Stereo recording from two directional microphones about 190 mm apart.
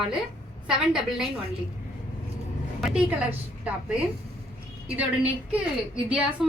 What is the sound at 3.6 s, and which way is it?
A woman's voice, 5° right (ahead or behind).